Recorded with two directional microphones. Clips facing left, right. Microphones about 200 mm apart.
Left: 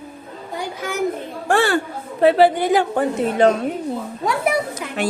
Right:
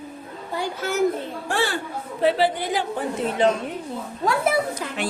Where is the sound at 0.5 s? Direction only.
15° left (ahead or behind).